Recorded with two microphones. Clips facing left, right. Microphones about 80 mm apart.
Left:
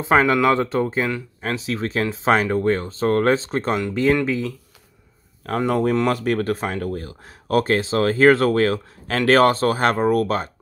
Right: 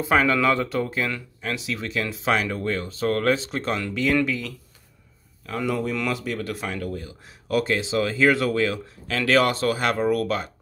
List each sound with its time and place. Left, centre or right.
0.0 s speech: left
1.4 s speech: left
5.6 s speech: left